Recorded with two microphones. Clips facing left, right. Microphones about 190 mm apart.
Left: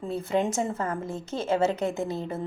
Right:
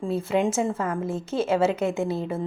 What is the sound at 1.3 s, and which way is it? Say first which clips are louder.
Speech: right 6 dB; 35° right (ahead or behind).